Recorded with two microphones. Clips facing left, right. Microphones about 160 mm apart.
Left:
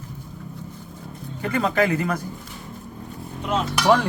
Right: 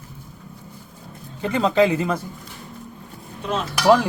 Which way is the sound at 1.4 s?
20° right (ahead or behind).